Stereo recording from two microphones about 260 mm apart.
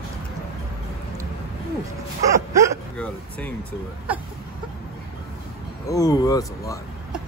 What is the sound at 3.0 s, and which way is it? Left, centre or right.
Speech, centre.